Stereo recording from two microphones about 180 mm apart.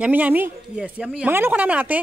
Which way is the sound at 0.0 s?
10° right (ahead or behind).